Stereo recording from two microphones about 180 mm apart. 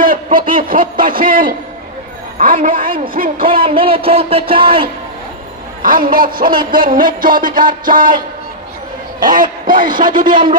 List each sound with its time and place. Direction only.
0.0 s music: 50° right (ahead or behind)
3.6 s speech: 30° right (ahead or behind)
5.8 s a man's voice: 50° right (ahead or behind)
6.1 s music: 55° right (ahead or behind)
9.2 s a man's voice: 50° right (ahead or behind)
10.2 s music: 50° right (ahead or behind)